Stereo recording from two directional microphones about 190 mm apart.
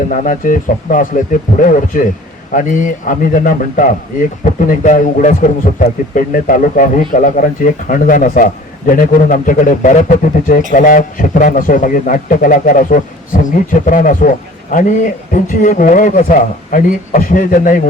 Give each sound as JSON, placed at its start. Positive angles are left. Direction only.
{"t": 0.1, "sound": "a man's voice", "side_deg": 45}